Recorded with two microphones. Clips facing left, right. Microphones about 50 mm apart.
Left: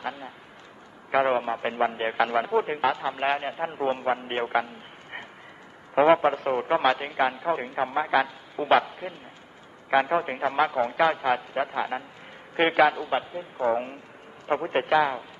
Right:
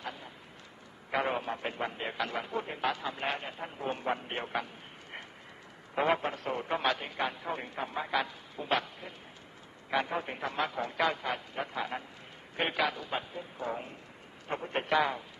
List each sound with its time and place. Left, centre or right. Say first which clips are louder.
1.1 s a man's voice: left 9 dB; left
5.9 s a man's voice: left 10 dB; left
11.7 s a man's voice: left 7 dB; left
12.5 s a man's voice: left 11 dB; left
14.9 s a man's voice: left 5 dB; centre